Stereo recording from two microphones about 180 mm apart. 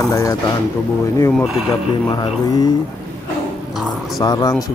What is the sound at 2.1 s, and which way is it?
Speech, 25° left (ahead or behind).